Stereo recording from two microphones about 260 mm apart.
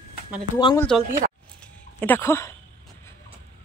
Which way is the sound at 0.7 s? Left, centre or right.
Centre.